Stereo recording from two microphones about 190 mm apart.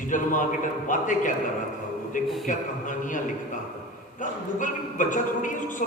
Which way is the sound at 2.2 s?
Centre (ahead or behind).